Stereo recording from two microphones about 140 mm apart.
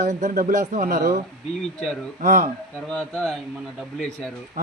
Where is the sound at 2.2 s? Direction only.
90° right.